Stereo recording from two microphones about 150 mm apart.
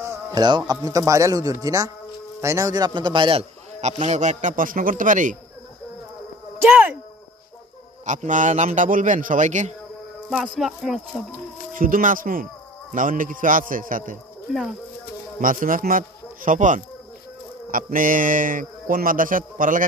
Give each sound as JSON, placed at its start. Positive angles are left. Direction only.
{"t": 0.0, "sound": "a man's voice", "side_deg": -20}
{"t": 4.0, "sound": "speech", "side_deg": -50}
{"t": 6.7, "sound": "speech", "side_deg": -10}
{"t": 8.0, "sound": "speech", "side_deg": -55}
{"t": 10.3, "sound": "speech", "side_deg": 0}
{"t": 11.7, "sound": "speech", "side_deg": -65}
{"t": 15.4, "sound": "speech", "side_deg": -65}